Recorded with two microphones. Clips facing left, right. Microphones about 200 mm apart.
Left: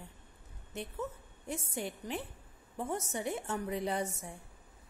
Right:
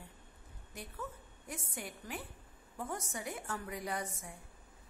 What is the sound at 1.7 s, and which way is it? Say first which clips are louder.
A woman's voice: left 6 dB; 25° left (ahead or behind).